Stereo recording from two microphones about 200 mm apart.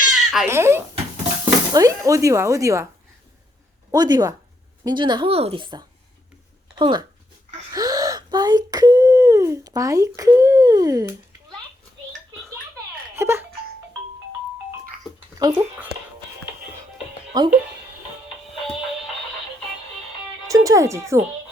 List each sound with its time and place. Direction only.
0.1 s speech: 5° right (ahead or behind)
3.9 s a woman's voice: 20° right (ahead or behind)
7.7 s wail: 20° right (ahead or behind)
13.1 s speech: 10° right (ahead or behind)
15.4 s speech: 15° right (ahead or behind)
17.3 s a woman's voice: 20° right (ahead or behind)
20.5 s speech: 15° right (ahead or behind)